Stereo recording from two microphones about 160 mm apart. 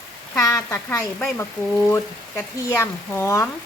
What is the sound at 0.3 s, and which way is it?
Speech, 20° left (ahead or behind).